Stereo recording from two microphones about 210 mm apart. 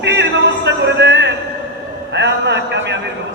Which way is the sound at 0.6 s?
55° right (ahead or behind).